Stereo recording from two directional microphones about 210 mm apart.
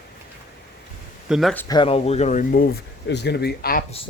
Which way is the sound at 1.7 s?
25° left (ahead or behind).